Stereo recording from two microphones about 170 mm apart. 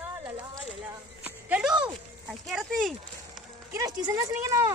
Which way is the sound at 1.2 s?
5° right (ahead or behind).